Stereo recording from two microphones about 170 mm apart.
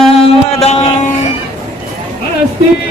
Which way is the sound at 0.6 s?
40° left (ahead or behind).